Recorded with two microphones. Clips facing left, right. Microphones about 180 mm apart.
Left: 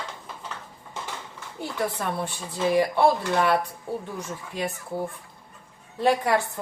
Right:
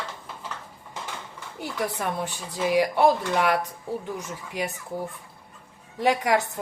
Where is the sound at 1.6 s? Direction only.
10° right (ahead or behind).